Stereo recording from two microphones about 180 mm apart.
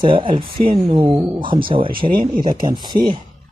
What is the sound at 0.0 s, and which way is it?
Speech, 25° right (ahead or behind).